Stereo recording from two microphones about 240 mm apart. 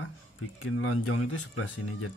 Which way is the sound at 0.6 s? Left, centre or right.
Left.